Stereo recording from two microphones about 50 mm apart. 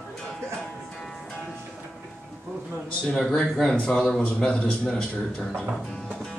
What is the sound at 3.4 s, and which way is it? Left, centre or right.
A man's voice, centre.